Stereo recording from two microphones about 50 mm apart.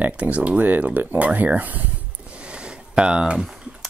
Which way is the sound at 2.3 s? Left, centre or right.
Right.